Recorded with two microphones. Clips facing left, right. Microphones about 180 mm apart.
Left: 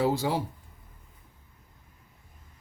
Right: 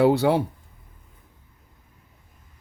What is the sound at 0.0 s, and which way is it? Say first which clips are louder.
Speech: right 8 dB; 65° right (ahead or behind).